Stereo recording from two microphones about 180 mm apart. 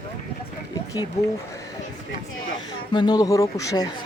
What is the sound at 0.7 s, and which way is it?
Run, 20° left (ahead or behind).